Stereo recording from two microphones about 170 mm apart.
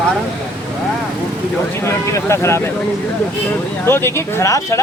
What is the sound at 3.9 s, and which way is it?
Speech, 15° left (ahead or behind).